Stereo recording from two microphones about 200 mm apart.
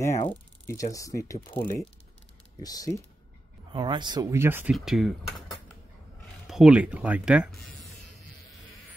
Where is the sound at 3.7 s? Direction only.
20° right (ahead or behind).